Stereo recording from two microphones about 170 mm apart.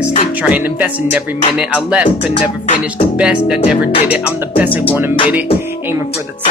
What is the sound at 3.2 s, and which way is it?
Music, 5° right (ahead or behind).